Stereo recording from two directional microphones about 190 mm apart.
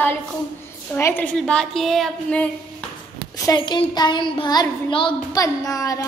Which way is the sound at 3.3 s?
20° left (ahead or behind).